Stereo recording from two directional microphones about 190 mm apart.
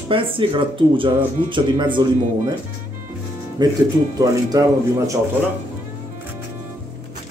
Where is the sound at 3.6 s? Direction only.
20° right (ahead or behind).